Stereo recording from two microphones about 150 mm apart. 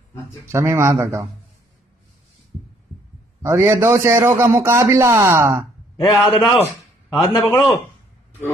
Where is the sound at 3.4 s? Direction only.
15° right (ahead or behind).